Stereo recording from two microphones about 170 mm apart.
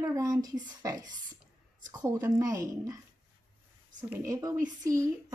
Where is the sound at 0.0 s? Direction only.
20° right (ahead or behind).